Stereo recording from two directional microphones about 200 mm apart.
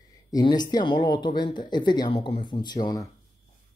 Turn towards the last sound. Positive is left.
turn(degrees=20)  # may be behind; listen again after turning